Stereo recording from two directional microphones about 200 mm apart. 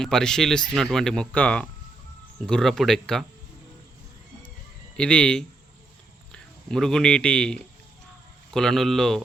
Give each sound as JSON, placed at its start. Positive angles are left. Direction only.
{"t": 0.0, "sound": "speech", "side_deg": 5}
{"t": 4.9, "sound": "speech", "side_deg": 5}